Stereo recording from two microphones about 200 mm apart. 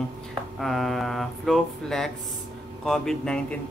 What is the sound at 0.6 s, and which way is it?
Speech, centre (ahead or behind).